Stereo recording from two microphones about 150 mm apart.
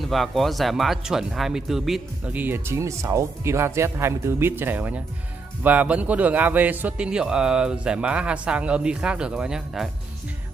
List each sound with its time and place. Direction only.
0.0 s speech: centre (ahead or behind)